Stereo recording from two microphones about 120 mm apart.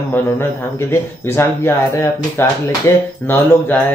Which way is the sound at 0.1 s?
20° left (ahead or behind).